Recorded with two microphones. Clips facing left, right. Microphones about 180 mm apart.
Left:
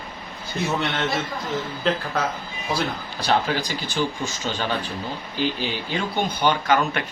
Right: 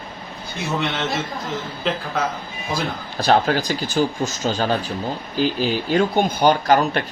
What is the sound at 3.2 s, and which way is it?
Speech, 45° right (ahead or behind).